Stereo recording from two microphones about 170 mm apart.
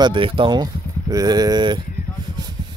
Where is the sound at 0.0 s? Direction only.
30° right (ahead or behind).